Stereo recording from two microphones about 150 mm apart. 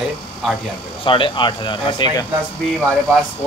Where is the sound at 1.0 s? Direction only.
35° left (ahead or behind).